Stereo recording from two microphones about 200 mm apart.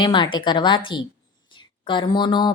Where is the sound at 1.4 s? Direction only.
25° left (ahead or behind).